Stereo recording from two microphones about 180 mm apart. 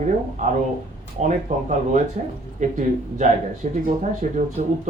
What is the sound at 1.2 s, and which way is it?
A man's voice, 40° right (ahead or behind).